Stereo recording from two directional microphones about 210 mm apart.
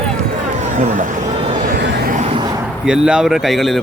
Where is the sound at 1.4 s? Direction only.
35° right (ahead or behind).